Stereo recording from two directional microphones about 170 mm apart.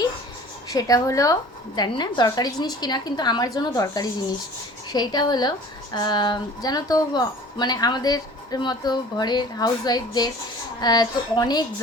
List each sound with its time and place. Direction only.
0.7 s speech: 20° left (ahead or behind)